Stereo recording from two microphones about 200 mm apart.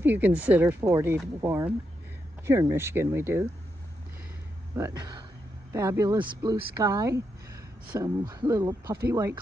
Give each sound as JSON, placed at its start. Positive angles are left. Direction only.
{"t": 0.0, "sound": "speech", "side_deg": -10}
{"t": 4.7, "sound": "speech", "side_deg": -15}